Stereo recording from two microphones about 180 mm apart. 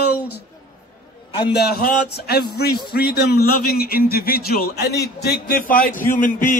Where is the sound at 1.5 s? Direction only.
60° left (ahead or behind).